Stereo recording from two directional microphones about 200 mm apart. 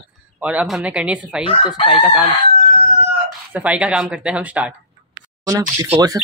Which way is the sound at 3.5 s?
5° right (ahead or behind).